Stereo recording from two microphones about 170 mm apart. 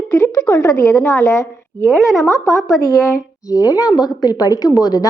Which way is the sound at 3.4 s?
20° left (ahead or behind).